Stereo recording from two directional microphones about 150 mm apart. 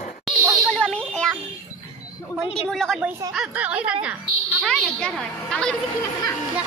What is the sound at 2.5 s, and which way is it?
Speech, 5° left (ahead or behind).